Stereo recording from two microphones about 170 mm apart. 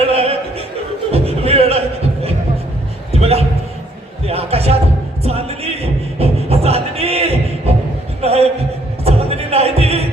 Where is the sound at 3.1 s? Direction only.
35° right (ahead or behind).